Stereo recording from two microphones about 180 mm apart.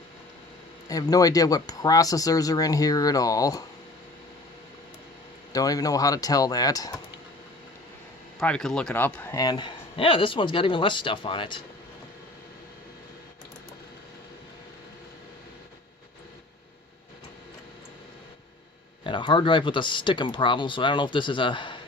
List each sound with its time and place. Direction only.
0.9 s a man's voice: 20° left (ahead or behind)
5.5 s a man's voice: 20° left (ahead or behind)
8.4 s a man's voice: 5° left (ahead or behind); by 11.6 s 25° left (ahead or behind)
19.0 s a man's voice: 25° left (ahead or behind)